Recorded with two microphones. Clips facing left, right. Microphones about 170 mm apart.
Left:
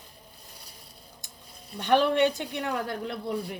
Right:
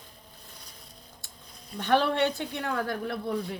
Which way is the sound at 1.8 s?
15° left (ahead or behind).